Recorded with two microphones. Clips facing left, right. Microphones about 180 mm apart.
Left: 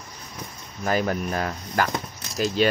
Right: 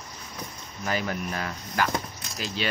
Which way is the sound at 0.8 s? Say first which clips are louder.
Left 5 dB; 45° left (ahead or behind).